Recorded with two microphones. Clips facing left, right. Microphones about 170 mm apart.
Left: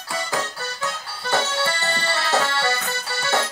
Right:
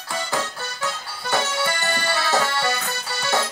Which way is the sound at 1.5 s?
30° left (ahead or behind).